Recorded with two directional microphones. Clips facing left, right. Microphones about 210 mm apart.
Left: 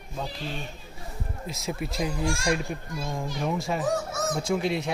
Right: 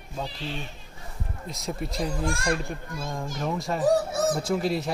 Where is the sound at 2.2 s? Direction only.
55° right (ahead or behind).